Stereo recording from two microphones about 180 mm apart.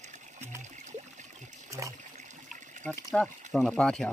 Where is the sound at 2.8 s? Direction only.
5° left (ahead or behind).